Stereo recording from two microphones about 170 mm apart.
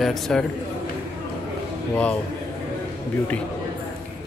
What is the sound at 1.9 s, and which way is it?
Speech, 10° left (ahead or behind).